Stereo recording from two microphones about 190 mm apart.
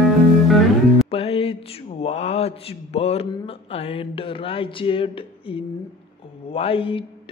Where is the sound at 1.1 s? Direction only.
30° left (ahead or behind).